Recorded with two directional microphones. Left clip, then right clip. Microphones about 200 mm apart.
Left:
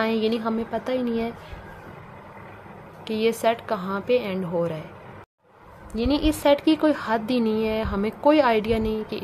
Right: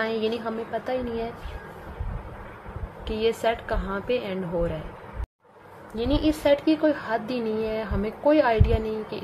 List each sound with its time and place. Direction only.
0.0 s a woman's voice: 35° left (ahead or behind)
3.1 s a woman's voice: 25° left (ahead or behind)
5.9 s a woman's voice: 30° left (ahead or behind)